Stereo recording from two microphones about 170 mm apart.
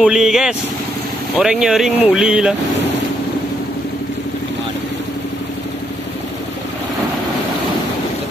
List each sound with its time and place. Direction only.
0.0 s speech: 5° right (ahead or behind)